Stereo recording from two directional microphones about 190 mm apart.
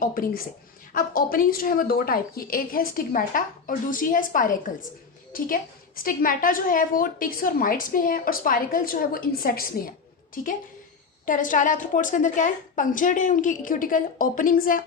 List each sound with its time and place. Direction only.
0.0 s a woman's voice: 50° left (ahead or behind)